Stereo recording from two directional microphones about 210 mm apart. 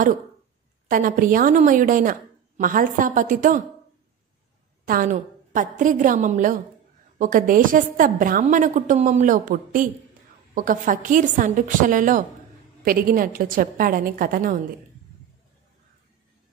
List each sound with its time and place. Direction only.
0.8 s a woman's voice: 40° right (ahead or behind)
4.8 s a woman's voice: 40° right (ahead or behind)